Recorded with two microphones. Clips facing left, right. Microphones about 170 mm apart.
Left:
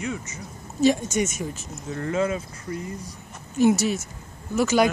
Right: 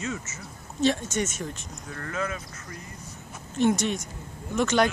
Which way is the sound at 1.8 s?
25° left (ahead or behind).